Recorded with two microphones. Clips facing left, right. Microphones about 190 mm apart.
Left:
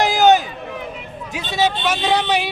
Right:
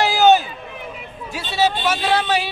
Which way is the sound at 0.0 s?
15° left (ahead or behind).